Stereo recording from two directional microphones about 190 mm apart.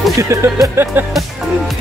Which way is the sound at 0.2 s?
15° right (ahead or behind).